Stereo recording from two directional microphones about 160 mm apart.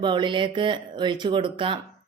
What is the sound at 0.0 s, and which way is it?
A woman's voice, 30° right (ahead or behind).